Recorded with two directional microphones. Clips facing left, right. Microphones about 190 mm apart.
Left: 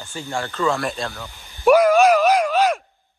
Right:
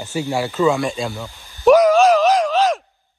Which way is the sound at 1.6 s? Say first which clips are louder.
Right 2 dB; 10° left (ahead or behind).